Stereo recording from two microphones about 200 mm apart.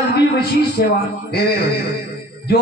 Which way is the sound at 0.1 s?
55° left (ahead or behind).